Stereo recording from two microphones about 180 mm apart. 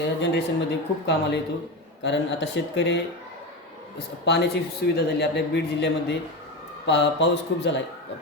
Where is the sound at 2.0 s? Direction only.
80° left.